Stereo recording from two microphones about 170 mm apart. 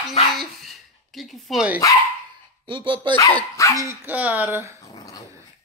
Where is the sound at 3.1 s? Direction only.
15° left (ahead or behind).